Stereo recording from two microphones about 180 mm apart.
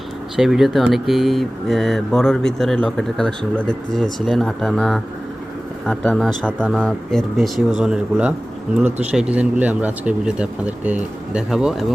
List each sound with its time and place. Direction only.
0.3 s speech: centre (ahead or behind)